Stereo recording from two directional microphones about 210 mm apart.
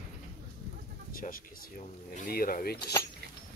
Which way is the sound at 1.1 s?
40° left (ahead or behind).